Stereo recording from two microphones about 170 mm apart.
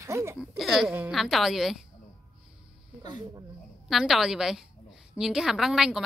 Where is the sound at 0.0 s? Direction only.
15° right (ahead or behind).